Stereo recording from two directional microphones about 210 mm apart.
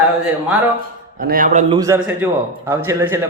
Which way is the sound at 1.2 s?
45° right (ahead or behind).